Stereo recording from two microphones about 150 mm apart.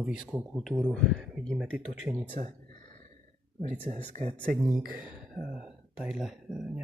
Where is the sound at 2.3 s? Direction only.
55° right (ahead or behind).